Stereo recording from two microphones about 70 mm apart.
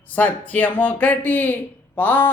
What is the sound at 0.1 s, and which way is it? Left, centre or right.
Speech, left.